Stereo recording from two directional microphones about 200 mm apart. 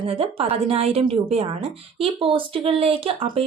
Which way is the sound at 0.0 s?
30° right (ahead or behind).